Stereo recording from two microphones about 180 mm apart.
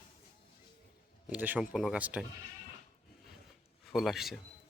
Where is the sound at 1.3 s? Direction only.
10° right (ahead or behind).